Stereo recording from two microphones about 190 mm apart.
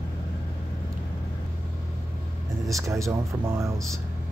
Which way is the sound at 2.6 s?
15° right (ahead or behind).